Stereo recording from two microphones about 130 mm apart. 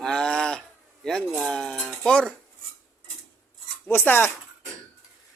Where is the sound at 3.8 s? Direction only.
15° left (ahead or behind).